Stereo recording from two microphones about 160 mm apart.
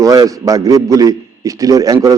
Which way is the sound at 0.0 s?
20° right (ahead or behind).